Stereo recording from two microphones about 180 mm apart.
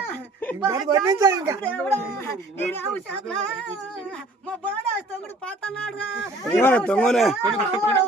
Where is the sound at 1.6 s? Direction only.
10° left (ahead or behind).